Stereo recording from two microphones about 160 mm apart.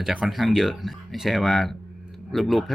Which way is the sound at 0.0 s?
5° right (ahead or behind).